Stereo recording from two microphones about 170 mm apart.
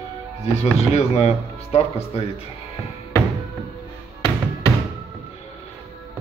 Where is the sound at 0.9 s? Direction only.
40° left (ahead or behind).